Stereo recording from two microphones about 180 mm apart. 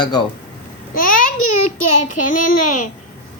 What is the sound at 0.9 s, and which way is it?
Babbling, 50° left (ahead or behind).